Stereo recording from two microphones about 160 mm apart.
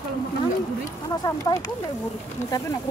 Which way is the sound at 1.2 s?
20° left (ahead or behind).